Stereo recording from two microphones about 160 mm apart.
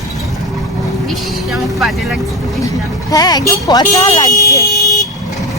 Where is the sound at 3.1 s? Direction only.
25° left (ahead or behind).